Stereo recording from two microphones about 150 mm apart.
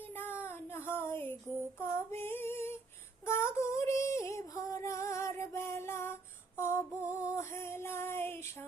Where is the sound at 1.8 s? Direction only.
15° left (ahead or behind).